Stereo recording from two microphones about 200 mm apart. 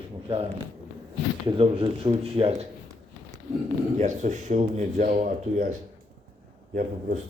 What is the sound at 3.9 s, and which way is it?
Speech, 40° right (ahead or behind).